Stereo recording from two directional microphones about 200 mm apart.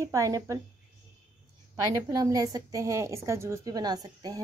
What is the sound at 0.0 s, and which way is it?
Speech, 15° right (ahead or behind).